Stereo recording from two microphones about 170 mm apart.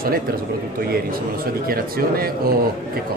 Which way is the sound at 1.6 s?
60° right (ahead or behind).